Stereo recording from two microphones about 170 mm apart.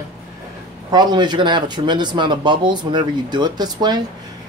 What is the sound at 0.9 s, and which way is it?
Speech, 25° right (ahead or behind).